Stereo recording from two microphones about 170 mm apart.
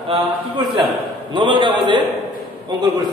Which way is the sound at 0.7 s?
25° right (ahead or behind).